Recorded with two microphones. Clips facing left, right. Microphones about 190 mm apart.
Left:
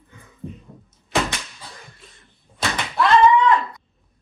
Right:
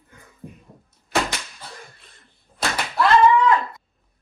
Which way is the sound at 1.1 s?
Centre (ahead or behind).